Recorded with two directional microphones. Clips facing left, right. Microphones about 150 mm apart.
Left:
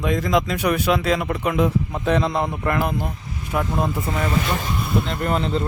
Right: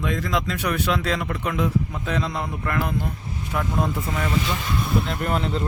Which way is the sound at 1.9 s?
55° left (ahead or behind).